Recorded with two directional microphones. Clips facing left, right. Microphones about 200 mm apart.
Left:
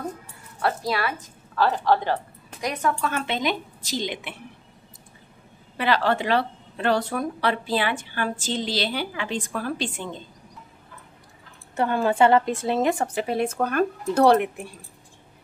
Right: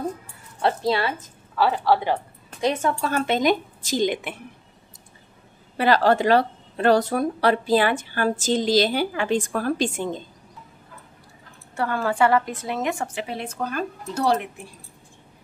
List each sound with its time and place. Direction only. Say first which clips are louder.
0.6 s speech: right 3 dB; 25° right (ahead or behind)
1.1 s a woman's voice: even; 10° right (ahead or behind)
2.6 s a woman's voice: right 3 dB; 25° right (ahead or behind); by 4.4 s 50° right (ahead or behind)
5.8 s a woman's voice: right 4 dB; 40° right (ahead or behind)
11.7 s a woman's voice: left 2 dB; 20° left (ahead or behind); by 14.5 s 60° left (ahead or behind)